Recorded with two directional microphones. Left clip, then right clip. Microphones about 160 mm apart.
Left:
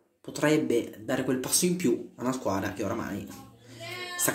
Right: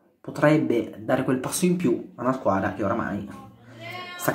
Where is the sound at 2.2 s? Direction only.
20° left (ahead or behind).